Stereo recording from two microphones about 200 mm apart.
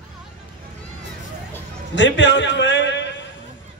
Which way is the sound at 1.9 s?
65° left (ahead or behind).